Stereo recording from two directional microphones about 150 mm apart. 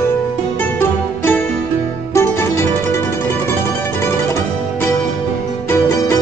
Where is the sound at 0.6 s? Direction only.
15° left (ahead or behind).